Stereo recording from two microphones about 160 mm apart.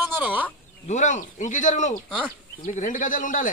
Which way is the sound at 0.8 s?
50° left (ahead or behind).